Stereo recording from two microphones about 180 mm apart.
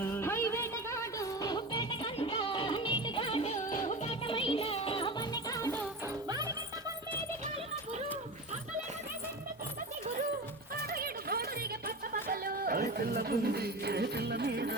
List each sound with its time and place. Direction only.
0.0 s music: 15° left (ahead or behind)
6.2 s music: 20° right (ahead or behind)
10.9 s a sound: 55° right (ahead or behind)
11.9 s speech: 55° right (ahead or behind)